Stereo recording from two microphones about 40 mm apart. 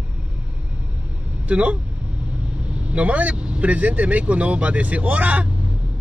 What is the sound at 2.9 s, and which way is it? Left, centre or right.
Speech, right.